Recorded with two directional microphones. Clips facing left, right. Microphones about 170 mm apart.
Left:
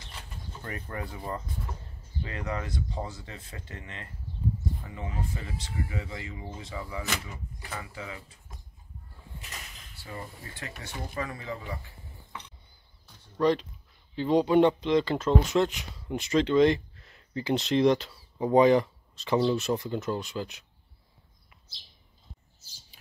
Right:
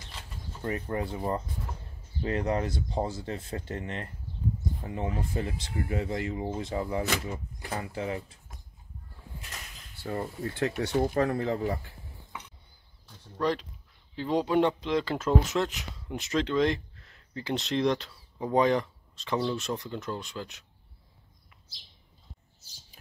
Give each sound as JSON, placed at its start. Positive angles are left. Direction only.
{"t": 0.7, "sound": "speech", "side_deg": -25}
{"t": 2.2, "sound": "speech", "side_deg": -40}
{"t": 10.0, "sound": "speech", "side_deg": -55}
{"t": 13.4, "sound": "speech", "side_deg": 0}